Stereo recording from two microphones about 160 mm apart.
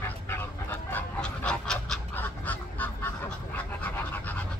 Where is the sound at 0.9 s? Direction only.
5° left (ahead or behind).